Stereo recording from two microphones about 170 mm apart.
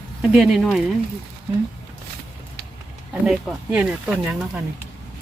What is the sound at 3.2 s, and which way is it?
Speech, 5° right (ahead or behind).